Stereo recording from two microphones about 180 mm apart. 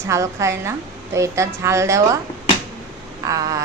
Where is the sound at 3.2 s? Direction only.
20° right (ahead or behind).